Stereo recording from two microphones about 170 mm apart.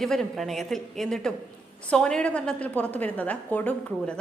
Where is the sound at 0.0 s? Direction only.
Centre (ahead or behind).